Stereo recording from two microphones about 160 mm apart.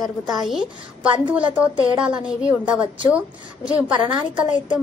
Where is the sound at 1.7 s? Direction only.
30° right (ahead or behind).